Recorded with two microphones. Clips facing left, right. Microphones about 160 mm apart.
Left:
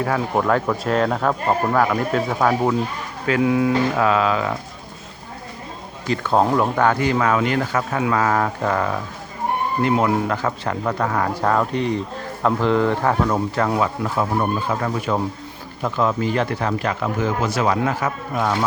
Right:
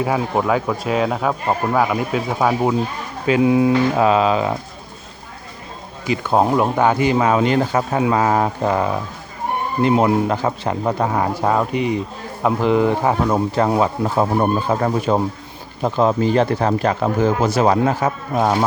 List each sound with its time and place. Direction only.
0.0 s speech: 10° right (ahead or behind)
3.2 s speech: 20° right (ahead or behind)
6.1 s speech: 10° right (ahead or behind); by 18.6 s 40° right (ahead or behind)